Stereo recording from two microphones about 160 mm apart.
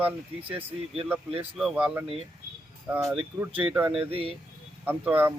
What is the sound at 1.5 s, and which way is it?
Speech, 5° right (ahead or behind).